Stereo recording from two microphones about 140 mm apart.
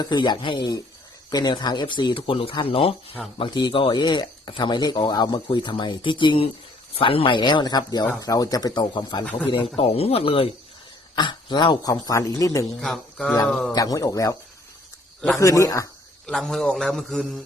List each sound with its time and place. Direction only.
0.0 s speech: 30° left (ahead or behind)
12.8 s a man's voice: 5° left (ahead or behind)
13.7 s speech: 25° left (ahead or behind)
15.4 s speech: 20° left (ahead or behind)
16.2 s a man's voice: 5° left (ahead or behind)